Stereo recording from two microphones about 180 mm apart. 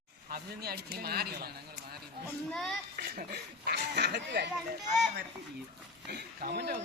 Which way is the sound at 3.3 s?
65° right (ahead or behind).